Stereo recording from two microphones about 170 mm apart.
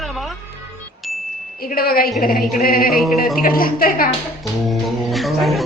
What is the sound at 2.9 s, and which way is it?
Speech, centre (ahead or behind).